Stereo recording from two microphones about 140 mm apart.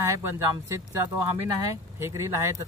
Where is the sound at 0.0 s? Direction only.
20° right (ahead or behind).